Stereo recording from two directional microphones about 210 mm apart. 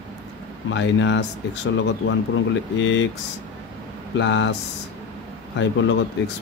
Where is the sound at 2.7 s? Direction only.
60° left (ahead or behind).